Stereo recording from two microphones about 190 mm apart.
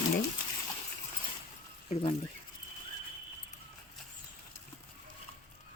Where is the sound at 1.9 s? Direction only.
30° left (ahead or behind).